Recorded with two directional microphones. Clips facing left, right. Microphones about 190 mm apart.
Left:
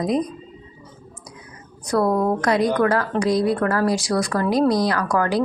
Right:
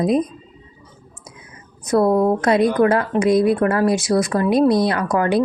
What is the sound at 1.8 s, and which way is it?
Speech, 25° right (ahead or behind).